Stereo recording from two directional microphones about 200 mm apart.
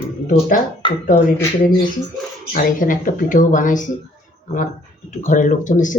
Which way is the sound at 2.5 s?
40° left (ahead or behind).